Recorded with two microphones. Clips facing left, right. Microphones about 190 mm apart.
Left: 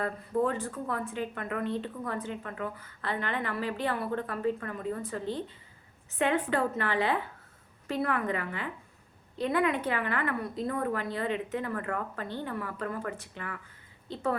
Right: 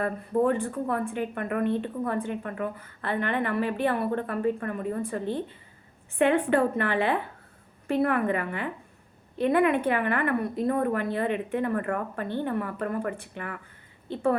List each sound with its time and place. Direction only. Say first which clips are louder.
0.0 s a woman's voice: right 4 dB; 55° right (ahead or behind)